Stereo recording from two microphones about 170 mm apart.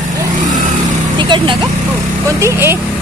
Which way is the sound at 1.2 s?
25° right (ahead or behind).